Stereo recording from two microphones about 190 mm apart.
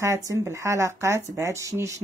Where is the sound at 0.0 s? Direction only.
15° right (ahead or behind).